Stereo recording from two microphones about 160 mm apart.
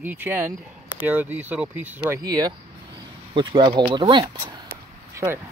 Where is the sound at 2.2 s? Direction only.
20° right (ahead or behind).